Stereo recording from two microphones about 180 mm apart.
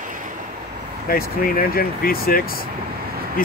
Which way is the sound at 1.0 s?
55° left (ahead or behind).